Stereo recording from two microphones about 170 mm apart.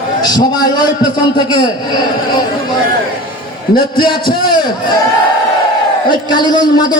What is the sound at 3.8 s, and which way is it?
Speech, 30° left (ahead or behind).